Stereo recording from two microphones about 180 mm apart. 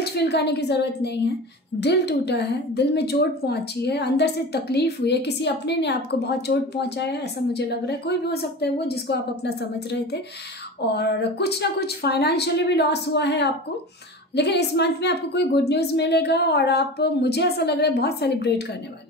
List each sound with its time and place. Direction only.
0.0 s a woman's voice: 65° left (ahead or behind)
10.9 s a woman's voice: 65° left (ahead or behind)